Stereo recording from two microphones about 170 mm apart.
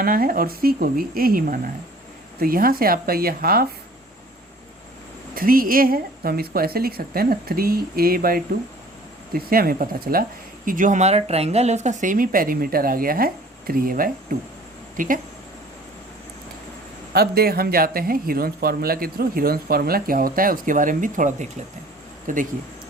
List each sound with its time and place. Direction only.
0.0 s speech: 55° right (ahead or behind)
5.3 s speech: 55° right (ahead or behind)
17.1 s speech: 65° right (ahead or behind); by 22.4 s 50° right (ahead or behind)